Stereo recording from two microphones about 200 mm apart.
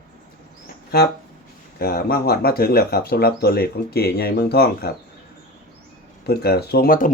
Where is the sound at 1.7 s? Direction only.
50° left (ahead or behind).